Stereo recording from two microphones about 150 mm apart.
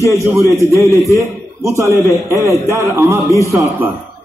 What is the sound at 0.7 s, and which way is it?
A man's voice, 20° right (ahead or behind).